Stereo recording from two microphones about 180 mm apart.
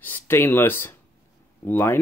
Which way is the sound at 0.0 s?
10° left (ahead or behind).